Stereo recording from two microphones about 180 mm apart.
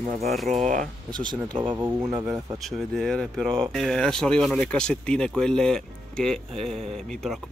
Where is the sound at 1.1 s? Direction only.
25° right (ahead or behind).